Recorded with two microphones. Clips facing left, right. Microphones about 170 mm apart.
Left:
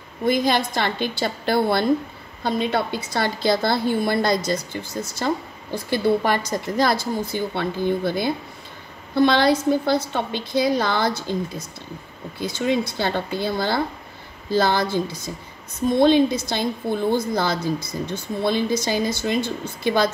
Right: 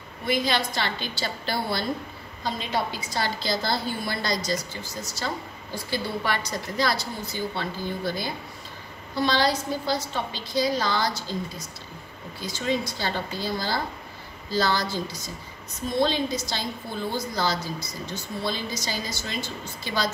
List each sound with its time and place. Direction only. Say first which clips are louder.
0.2 s a woman's voice: left 6 dB; 50° left (ahead or behind)